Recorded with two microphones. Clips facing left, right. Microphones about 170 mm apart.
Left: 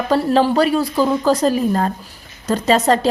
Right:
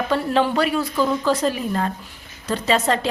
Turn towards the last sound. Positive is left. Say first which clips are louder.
# left 5 dB
turn(degrees=40)  # may be behind; listen again after turning